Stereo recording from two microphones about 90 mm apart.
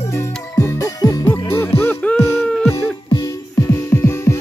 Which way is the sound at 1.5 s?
25° left (ahead or behind).